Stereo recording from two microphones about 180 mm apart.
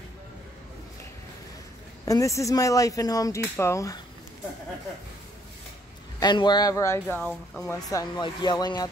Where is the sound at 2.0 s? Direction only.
20° left (ahead or behind).